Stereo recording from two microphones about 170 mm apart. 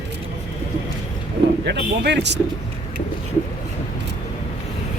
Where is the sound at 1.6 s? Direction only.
80° right.